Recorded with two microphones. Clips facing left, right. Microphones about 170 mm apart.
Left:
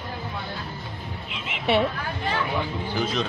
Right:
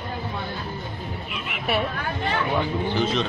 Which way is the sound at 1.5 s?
25° left (ahead or behind).